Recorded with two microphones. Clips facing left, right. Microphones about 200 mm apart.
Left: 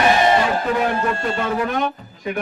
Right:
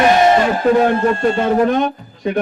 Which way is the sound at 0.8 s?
35° right (ahead or behind).